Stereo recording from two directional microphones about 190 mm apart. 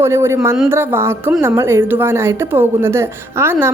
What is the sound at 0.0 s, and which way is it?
A woman's voice, 15° right (ahead or behind).